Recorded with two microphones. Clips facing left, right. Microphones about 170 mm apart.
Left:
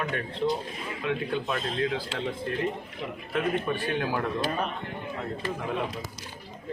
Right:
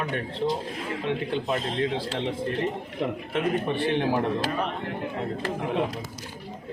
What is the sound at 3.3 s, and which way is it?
Speech, 25° right (ahead or behind).